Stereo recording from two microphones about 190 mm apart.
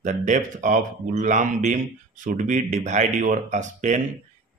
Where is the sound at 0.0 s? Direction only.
40° right (ahead or behind).